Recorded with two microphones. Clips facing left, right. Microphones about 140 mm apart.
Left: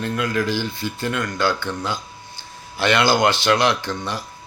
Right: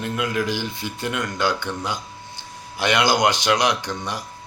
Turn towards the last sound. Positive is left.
turn(degrees=-15)  # may be behind; listen again after turning